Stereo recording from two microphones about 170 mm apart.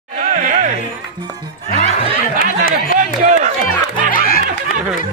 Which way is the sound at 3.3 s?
45° right (ahead or behind).